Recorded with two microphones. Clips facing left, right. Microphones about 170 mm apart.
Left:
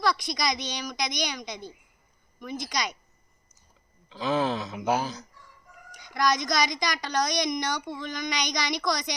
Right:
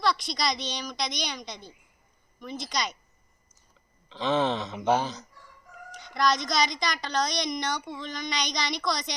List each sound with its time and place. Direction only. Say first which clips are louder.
0.2 s a woman's voice: left 1 dB; 15° left (ahead or behind)
4.1 s speech: right 1 dB; 5° left (ahead or behind)
5.9 s a woman's voice: even; 15° left (ahead or behind)